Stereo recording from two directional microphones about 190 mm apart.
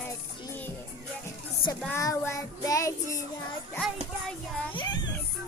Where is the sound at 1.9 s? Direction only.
15° left (ahead or behind).